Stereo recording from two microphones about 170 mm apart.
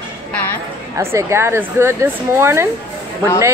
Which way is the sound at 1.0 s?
15° right (ahead or behind).